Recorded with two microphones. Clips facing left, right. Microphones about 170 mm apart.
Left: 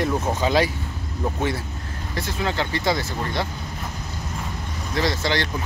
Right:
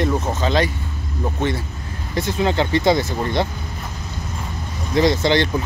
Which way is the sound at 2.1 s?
20° right (ahead or behind).